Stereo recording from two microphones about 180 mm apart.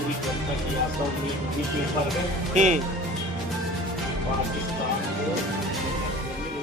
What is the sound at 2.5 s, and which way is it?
Speech, 40° right (ahead or behind).